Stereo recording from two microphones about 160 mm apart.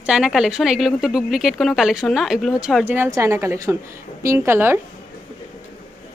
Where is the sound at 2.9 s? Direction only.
15° right (ahead or behind).